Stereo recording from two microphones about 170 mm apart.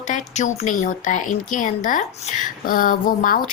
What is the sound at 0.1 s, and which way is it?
Speech, 45° left (ahead or behind).